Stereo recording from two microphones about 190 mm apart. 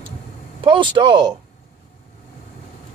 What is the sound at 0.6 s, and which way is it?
Speech, 25° right (ahead or behind).